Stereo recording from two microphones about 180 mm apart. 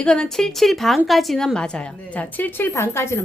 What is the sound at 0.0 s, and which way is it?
A woman's voice, 5° left (ahead or behind).